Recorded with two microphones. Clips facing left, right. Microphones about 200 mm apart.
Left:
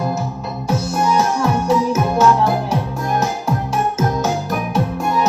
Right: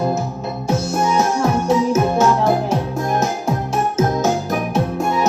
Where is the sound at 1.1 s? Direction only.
50° right (ahead or behind).